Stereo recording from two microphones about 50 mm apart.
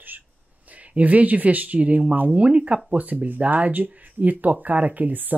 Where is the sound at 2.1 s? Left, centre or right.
Right.